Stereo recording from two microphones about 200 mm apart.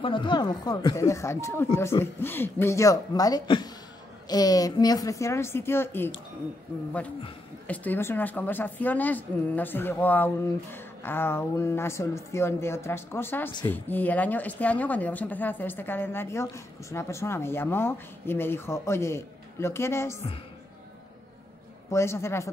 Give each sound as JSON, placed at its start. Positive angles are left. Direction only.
{"t": 0.0, "sound": "speech", "side_deg": 25}
{"t": 7.6, "sound": "speech", "side_deg": 5}
{"t": 21.9, "sound": "speech", "side_deg": 15}